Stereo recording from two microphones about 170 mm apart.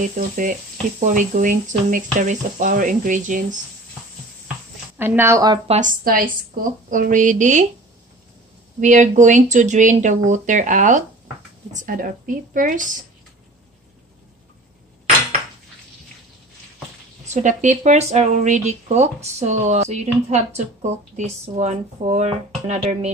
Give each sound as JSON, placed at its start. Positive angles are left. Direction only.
{"t": 0.0, "sound": "speech", "side_deg": -50}
{"t": 4.9, "sound": "a woman's voice", "side_deg": -15}
{"t": 5.8, "sound": "speech", "side_deg": -55}
{"t": 8.7, "sound": "speech", "side_deg": -45}
{"t": 17.3, "sound": "speech", "side_deg": -45}